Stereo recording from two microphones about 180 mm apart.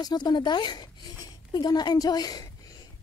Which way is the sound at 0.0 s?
25° left (ahead or behind).